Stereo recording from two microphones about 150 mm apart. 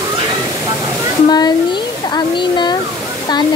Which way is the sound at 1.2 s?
25° left (ahead or behind).